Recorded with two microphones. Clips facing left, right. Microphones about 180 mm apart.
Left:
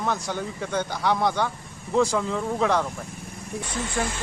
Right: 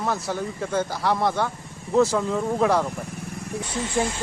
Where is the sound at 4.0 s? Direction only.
20° right (ahead or behind).